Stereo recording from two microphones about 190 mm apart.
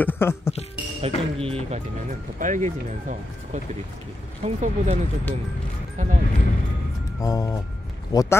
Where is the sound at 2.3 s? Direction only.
40° right (ahead or behind).